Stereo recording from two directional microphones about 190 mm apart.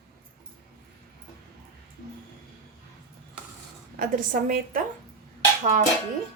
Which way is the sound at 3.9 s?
45° right (ahead or behind).